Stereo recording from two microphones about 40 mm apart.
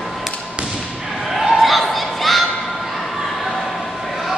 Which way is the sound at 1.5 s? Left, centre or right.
Centre.